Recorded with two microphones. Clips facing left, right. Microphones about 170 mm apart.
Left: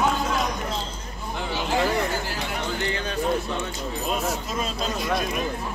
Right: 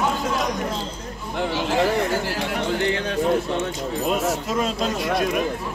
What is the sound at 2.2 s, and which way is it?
Speech, 80° right.